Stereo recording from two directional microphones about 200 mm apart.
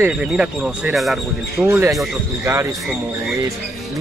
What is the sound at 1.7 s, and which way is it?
Speech, 15° right (ahead or behind).